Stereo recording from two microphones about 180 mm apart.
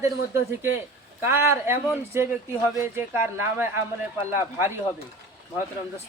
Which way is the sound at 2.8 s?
15° right (ahead or behind).